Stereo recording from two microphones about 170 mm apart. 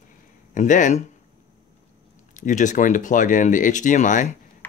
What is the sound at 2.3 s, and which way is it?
Speech, 45° left (ahead or behind).